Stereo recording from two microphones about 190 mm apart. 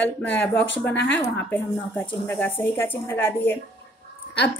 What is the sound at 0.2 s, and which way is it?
Speech, 10° left (ahead or behind).